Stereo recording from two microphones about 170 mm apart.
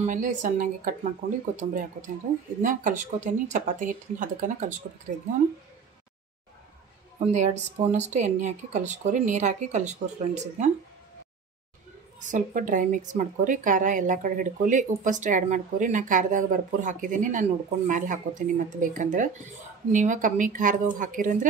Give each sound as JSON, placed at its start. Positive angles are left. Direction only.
{"t": 0.0, "sound": "a woman's voice", "side_deg": -50}
{"t": 7.2, "sound": "a woman's voice", "side_deg": -40}
{"t": 12.2, "sound": "a woman's voice", "side_deg": -50}